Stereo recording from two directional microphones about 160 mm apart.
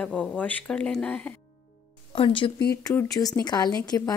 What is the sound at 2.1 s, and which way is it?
Speech, 30° left (ahead or behind).